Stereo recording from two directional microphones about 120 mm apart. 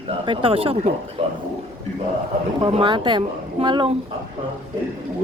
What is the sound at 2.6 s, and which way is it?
Speech, 45° right (ahead or behind).